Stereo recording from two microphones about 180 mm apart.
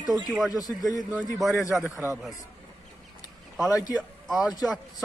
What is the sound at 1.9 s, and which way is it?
Speech, 15° right (ahead or behind).